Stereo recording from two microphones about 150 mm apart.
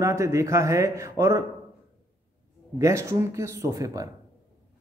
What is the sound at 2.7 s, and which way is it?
A man's voice, 20° right (ahead or behind).